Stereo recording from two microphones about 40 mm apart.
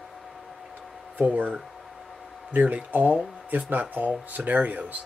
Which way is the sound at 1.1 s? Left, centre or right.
Right.